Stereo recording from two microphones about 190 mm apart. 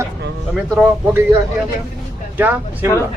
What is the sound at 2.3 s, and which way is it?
Speech, 10° right (ahead or behind).